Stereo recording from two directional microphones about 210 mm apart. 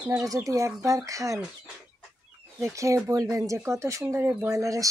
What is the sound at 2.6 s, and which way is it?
Speech, 15° right (ahead or behind).